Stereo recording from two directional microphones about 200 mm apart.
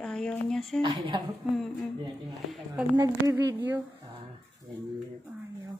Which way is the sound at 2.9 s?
15° right (ahead or behind).